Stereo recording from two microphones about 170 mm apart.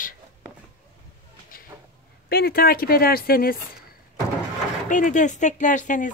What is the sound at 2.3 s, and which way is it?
A woman's voice, 65° left (ahead or behind).